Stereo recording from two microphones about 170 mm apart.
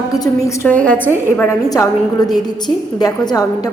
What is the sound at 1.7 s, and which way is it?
A woman's voice, 20° left (ahead or behind).